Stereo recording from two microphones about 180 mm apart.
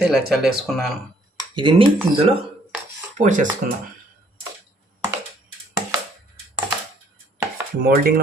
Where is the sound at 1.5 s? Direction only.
25° right (ahead or behind).